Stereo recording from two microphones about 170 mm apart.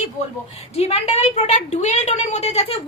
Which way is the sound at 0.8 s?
40° left (ahead or behind).